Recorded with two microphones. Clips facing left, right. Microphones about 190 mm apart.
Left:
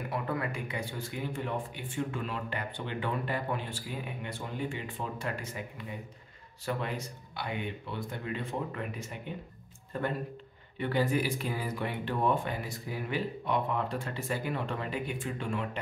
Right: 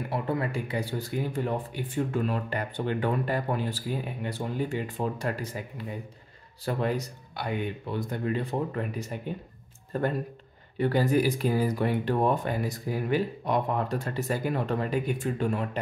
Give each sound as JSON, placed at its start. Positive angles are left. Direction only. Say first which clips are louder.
{"t": 0.1, "sound": "speech", "louder": "right 5 dB", "side_deg": -30}